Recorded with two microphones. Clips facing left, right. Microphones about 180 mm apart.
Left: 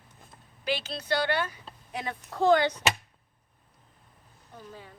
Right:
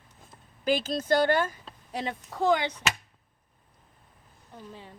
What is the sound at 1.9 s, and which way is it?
Speech, 30° right (ahead or behind).